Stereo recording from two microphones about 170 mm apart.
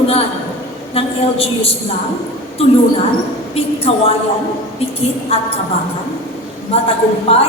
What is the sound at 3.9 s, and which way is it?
Speech, 35° left (ahead or behind).